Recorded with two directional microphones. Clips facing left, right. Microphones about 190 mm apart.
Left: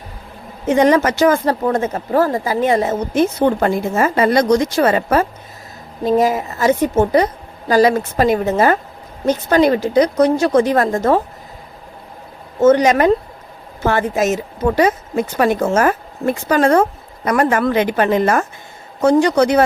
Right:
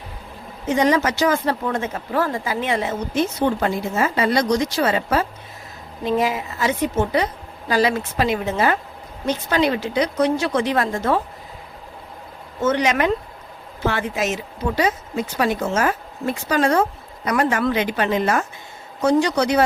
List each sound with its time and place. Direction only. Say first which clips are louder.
0.7 s speech: left 5 dB; 55° left (ahead or behind)
12.5 s speech: left 8 dB; 40° left (ahead or behind)